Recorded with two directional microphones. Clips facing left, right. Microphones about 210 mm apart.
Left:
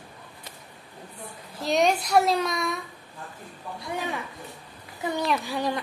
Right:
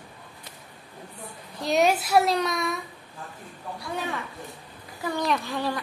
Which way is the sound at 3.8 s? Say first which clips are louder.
Even; 15° left (ahead or behind).